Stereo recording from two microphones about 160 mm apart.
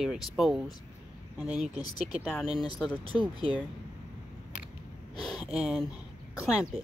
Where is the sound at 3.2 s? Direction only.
35° right (ahead or behind).